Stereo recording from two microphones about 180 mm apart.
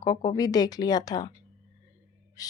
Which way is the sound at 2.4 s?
20° left (ahead or behind).